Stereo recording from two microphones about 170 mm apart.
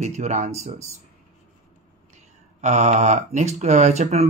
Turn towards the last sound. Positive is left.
turn(degrees=-40)  # may be behind; listen again after turning